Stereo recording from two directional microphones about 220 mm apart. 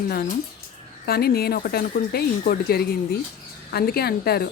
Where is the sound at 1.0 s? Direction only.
45° left (ahead or behind).